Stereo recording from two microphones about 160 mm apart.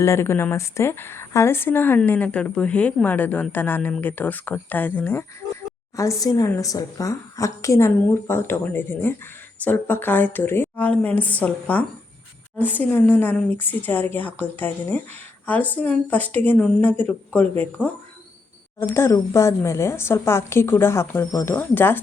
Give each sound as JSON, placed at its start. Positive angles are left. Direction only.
{"t": 0.0, "sound": "a woman's voice", "side_deg": 15}